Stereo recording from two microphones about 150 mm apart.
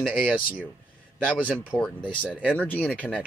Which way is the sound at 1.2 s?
5° left (ahead or behind).